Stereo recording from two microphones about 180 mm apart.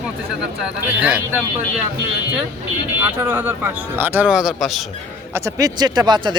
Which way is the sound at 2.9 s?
10° right (ahead or behind).